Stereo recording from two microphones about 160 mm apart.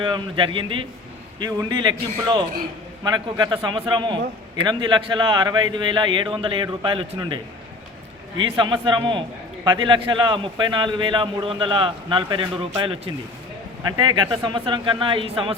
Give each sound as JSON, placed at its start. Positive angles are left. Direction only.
{"t": 0.0, "sound": "a man's voice", "side_deg": -30}
{"t": 8.4, "sound": "a man's voice", "side_deg": -30}